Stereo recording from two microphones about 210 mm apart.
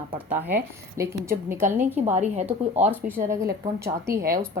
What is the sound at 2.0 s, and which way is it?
Speech, 30° right (ahead or behind).